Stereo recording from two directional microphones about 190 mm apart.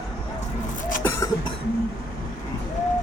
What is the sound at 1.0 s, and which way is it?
Cough, 20° left (ahead or behind).